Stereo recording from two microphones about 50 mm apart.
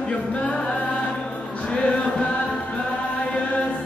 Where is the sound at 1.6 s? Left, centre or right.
Centre.